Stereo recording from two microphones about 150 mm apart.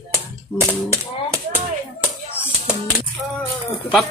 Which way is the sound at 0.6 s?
15° right (ahead or behind).